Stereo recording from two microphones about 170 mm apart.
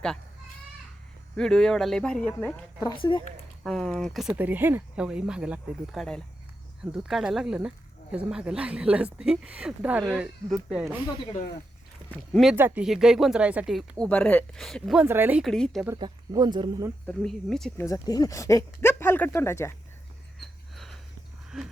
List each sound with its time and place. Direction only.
1.4 s speech: 5° left (ahead or behind)
2.8 s speech: 30° left (ahead or behind)
3.6 s speech: centre (ahead or behind)
12.1 s speech: 5° left (ahead or behind)
12.5 s speech: 10° right (ahead or behind)
14.0 s speech: 10° left (ahead or behind)
15.0 s speech: 10° right (ahead or behind)
16.0 s speech: 25° right (ahead or behind)
17.1 s speech: 5° left (ahead or behind)
17.7 s speech: 20° left (ahead or behind)
20.4 s a sound: centre (ahead or behind)